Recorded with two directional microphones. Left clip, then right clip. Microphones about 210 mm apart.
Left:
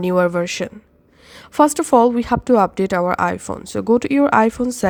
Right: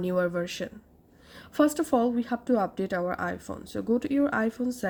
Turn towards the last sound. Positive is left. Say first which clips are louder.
# left 12 dB
turn(degrees=35)  # may be behind; listen again after turning